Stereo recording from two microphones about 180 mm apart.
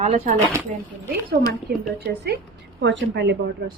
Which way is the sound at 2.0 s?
65° right (ahead or behind).